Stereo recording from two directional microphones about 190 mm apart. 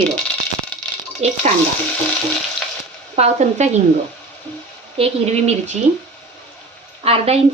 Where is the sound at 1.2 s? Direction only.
35° right (ahead or behind).